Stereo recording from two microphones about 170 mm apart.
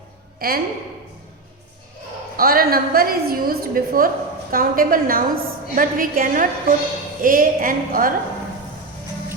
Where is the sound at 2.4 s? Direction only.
60° right (ahead or behind).